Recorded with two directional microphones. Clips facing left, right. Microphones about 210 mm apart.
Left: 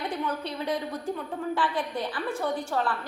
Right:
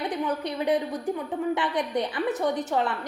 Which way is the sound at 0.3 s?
15° right (ahead or behind).